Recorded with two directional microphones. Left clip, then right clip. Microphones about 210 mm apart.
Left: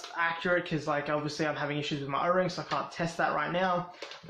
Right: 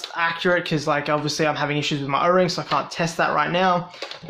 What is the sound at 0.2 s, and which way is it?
Speech, 35° right (ahead or behind).